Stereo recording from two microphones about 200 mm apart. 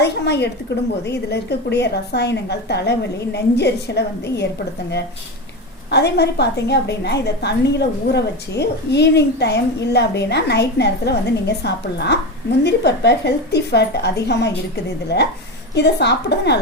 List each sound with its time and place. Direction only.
0.0 s a woman's voice: 55° left (ahead or behind)
5.9 s a woman's voice: 55° left (ahead or behind)